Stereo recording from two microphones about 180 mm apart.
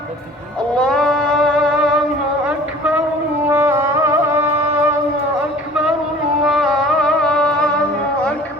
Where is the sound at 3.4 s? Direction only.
15° right (ahead or behind).